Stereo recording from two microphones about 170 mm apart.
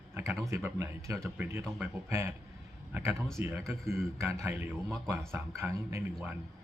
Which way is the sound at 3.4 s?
15° right (ahead or behind).